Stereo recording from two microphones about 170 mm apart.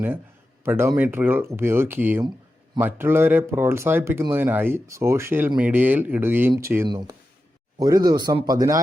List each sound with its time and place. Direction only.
0.6 s speech: 15° right (ahead or behind)